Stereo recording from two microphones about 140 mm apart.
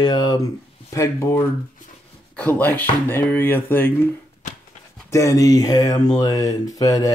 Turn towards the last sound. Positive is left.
turn(degrees=25)  # may be behind; listen again after turning